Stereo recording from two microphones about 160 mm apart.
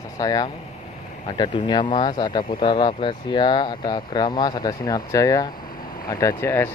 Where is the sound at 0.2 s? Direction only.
25° left (ahead or behind).